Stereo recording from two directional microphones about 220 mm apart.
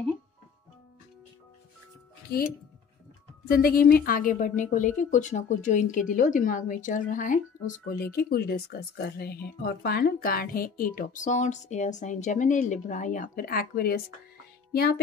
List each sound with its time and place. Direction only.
2.3 s a woman's voice: 45° left (ahead or behind)